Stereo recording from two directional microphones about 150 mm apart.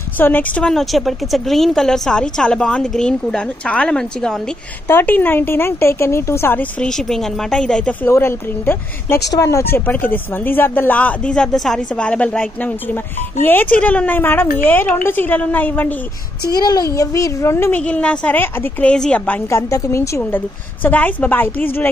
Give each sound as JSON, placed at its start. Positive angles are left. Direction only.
{"t": 0.2, "sound": "a woman's voice", "side_deg": 10}
{"t": 16.4, "sound": "a woman's voice", "side_deg": 25}